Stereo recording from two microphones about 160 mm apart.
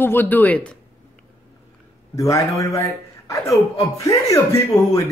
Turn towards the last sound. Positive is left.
turn(degrees=20)  # may be behind; listen again after turning